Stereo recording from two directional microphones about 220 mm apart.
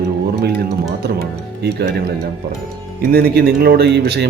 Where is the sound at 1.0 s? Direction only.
50° right (ahead or behind).